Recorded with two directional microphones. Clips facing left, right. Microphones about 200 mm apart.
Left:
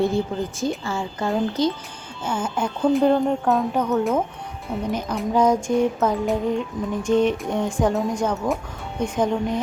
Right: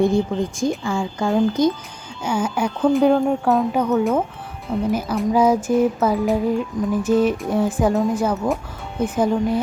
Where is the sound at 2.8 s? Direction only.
Centre (ahead or behind).